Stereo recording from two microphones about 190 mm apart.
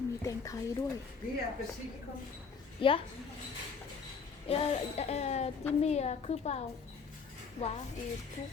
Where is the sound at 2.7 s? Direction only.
30° left (ahead or behind).